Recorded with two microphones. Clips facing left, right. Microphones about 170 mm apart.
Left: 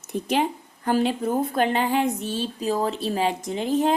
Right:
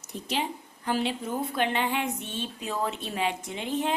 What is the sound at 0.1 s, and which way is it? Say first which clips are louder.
A woman's voice: left 8 dB; 50° left (ahead or behind).